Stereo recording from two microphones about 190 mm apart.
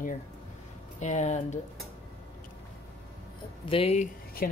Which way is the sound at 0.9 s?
40° left (ahead or behind).